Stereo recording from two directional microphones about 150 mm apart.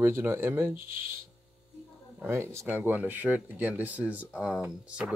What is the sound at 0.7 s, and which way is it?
Speech, 65° right (ahead or behind).